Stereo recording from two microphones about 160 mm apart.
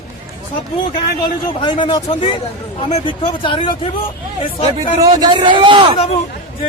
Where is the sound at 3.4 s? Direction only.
30° left (ahead or behind).